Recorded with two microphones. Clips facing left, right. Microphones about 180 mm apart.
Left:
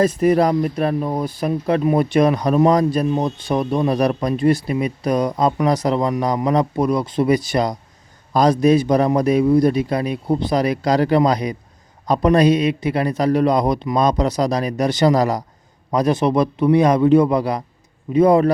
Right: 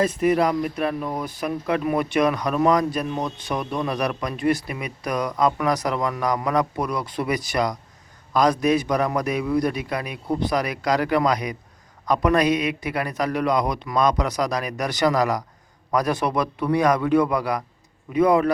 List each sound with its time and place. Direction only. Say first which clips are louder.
0.0 s a man's voice: left 4 dB; 40° left (ahead or behind)